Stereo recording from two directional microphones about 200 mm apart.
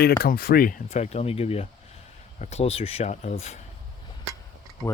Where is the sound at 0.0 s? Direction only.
50° left (ahead or behind); by 3.6 s 35° left (ahead or behind).